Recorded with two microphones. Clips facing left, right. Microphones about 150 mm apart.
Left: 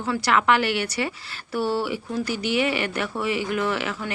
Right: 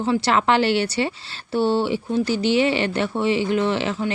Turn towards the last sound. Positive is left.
turn(degrees=-30)  # may be behind; listen again after turning